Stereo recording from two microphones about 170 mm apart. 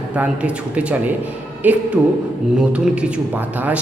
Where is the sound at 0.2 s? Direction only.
5° right (ahead or behind).